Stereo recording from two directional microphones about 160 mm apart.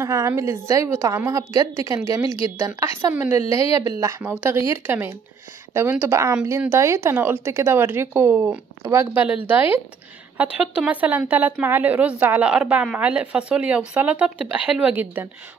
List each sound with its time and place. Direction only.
0.0 s a woman's voice: 20° right (ahead or behind)